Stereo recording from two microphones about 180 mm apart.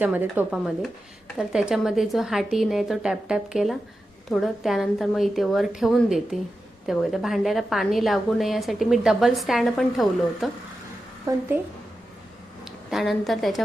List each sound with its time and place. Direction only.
0.0 s a woman's voice: 10° right (ahead or behind)
11.3 s a woman's voice: 20° right (ahead or behind)
12.6 s a woman's voice: centre (ahead or behind)